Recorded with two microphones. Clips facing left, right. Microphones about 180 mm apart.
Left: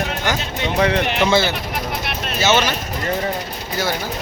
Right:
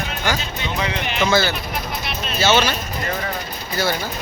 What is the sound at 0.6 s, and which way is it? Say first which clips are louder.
Speech: left 7 dB; 60° left (ahead or behind).